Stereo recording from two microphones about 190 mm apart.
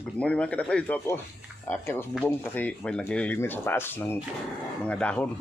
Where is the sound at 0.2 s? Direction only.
5° left (ahead or behind).